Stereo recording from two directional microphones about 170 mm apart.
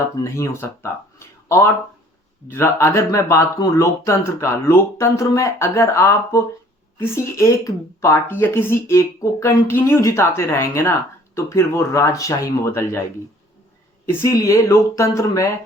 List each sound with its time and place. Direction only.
0.2 s speech: 15° left (ahead or behind)
14.1 s speech: 15° left (ahead or behind)